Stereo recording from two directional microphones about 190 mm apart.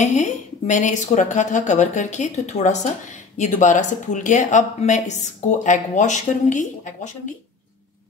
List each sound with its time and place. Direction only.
0.0 s a woman's voice: 40° left (ahead or behind)